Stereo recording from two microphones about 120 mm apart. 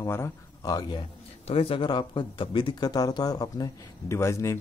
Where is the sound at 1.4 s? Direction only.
55° left (ahead or behind).